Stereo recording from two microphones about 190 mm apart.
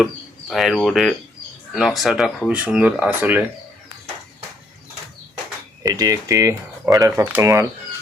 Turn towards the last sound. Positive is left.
turn(degrees=-15)  # may be behind; listen again after turning